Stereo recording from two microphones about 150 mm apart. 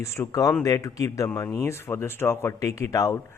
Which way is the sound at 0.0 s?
20° left (ahead or behind).